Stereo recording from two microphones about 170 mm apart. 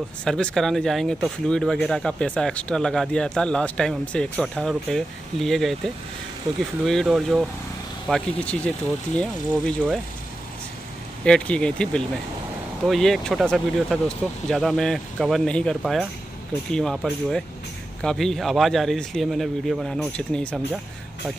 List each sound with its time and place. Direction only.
0.2 s speech: 5° left (ahead or behind)
11.2 s speech: 5° left (ahead or behind)